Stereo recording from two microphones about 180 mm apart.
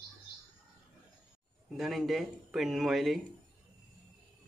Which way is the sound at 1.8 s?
Centre (ahead or behind).